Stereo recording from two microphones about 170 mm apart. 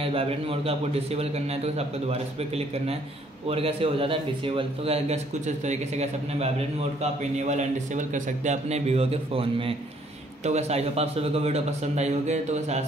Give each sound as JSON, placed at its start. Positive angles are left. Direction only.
{"t": 0.0, "sound": "a man's voice", "side_deg": -35}